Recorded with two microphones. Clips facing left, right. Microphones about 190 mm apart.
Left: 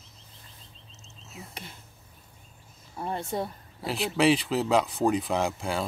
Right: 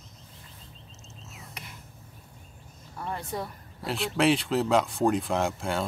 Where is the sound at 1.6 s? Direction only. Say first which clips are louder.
Left 2 dB; 30° left (ahead or behind).